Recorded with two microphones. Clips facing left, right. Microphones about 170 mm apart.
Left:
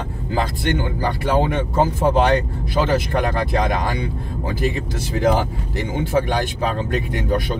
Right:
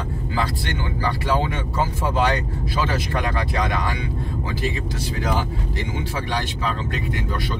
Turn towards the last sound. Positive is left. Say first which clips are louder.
# left 6 dB
turn(degrees=55)  # may be behind; listen again after turning